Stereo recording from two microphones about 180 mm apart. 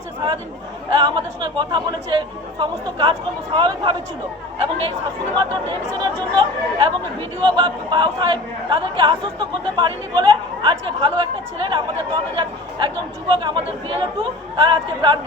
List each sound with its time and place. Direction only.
0.9 s speech: 25° right (ahead or behind)